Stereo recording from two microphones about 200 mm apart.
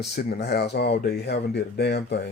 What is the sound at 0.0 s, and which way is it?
Speech, 55° left (ahead or behind).